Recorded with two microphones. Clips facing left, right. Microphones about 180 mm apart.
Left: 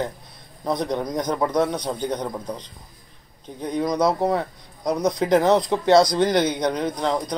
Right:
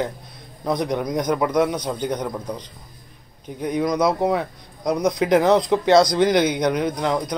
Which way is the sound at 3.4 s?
15° right (ahead or behind).